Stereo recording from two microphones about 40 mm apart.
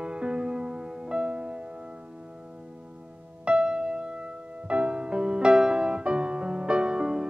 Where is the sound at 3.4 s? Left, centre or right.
Right.